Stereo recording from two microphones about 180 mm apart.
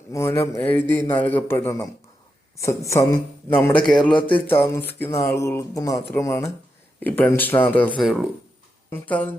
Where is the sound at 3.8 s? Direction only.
5° left (ahead or behind).